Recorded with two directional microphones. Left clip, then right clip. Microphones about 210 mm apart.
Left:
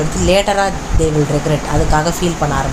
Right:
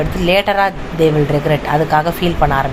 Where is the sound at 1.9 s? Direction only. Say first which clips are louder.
Right 1 dB; 15° right (ahead or behind).